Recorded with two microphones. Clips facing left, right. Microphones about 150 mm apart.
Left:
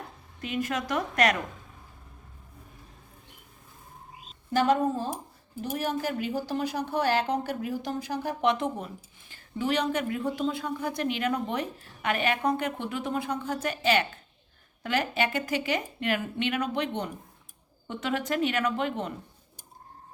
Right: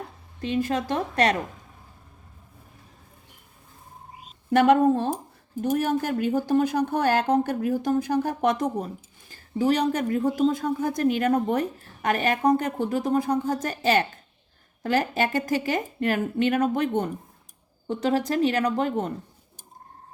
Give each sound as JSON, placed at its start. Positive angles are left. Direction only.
{"t": 0.4, "sound": "a woman's voice", "side_deg": -30}
{"t": 4.5, "sound": "speech", "side_deg": -65}
{"t": 5.6, "sound": "a woman's voice", "side_deg": -50}
{"t": 17.8, "sound": "a woman's voice", "side_deg": -35}